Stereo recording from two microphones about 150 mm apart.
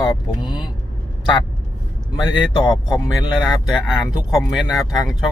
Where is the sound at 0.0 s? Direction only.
25° left (ahead or behind).